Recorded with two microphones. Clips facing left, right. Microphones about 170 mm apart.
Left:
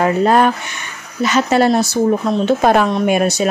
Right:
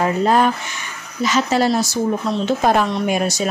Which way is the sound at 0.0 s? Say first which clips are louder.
Left 3 dB; 60° left (ahead or behind).